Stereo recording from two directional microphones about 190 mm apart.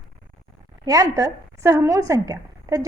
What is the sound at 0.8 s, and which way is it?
A woman's voice, 15° right (ahead or behind).